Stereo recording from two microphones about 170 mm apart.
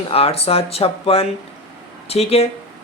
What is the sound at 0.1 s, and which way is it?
A woman's voice, 35° left (ahead or behind).